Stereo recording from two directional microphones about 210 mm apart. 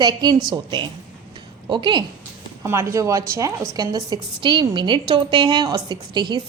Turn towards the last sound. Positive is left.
turn(degrees=-20)  # may be behind; listen again after turning